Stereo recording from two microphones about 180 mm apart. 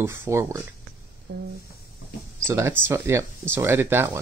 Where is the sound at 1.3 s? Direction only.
65° right (ahead or behind).